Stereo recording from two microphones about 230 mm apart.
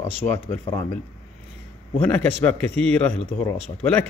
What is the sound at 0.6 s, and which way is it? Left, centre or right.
Speech, left.